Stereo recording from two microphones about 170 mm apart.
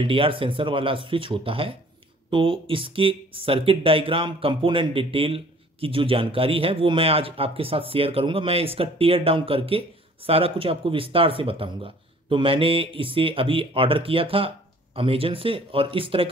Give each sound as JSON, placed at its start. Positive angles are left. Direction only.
{"t": 0.0, "sound": "speech", "side_deg": -30}